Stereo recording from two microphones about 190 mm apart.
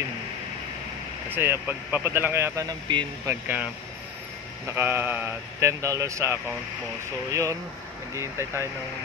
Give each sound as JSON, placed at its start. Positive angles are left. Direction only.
{"t": 1.3, "sound": "speech", "side_deg": -10}
{"t": 3.3, "sound": "speech", "side_deg": -10}
{"t": 4.6, "sound": "speech", "side_deg": -10}